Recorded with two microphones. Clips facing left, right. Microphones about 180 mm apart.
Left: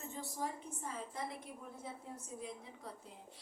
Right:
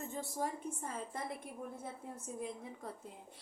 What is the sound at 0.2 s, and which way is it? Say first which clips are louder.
A woman's voice: right 3 dB; 50° right (ahead or behind).